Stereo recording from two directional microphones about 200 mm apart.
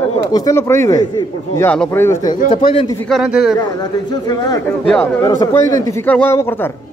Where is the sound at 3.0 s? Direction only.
Centre (ahead or behind).